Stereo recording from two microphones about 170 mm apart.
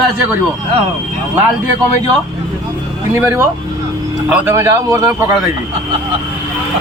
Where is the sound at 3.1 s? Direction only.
15° right (ahead or behind).